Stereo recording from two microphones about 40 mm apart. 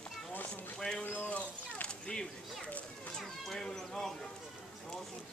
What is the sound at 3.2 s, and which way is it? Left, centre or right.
Speech, centre.